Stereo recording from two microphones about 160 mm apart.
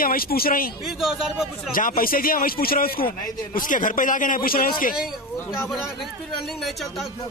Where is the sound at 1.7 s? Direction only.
60° left (ahead or behind).